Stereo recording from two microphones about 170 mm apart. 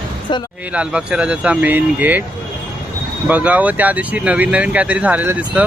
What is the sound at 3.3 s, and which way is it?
Speech, 10° right (ahead or behind).